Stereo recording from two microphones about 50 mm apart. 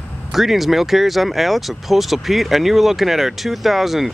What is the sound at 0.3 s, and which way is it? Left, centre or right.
Speech, centre.